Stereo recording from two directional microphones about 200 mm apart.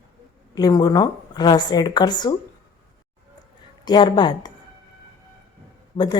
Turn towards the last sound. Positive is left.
turn(degrees=20)  # may be behind; listen again after turning